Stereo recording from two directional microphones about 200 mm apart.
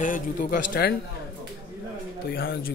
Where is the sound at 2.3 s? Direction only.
50° left (ahead or behind).